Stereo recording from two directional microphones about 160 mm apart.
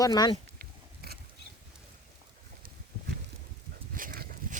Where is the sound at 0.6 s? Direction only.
75° right (ahead or behind).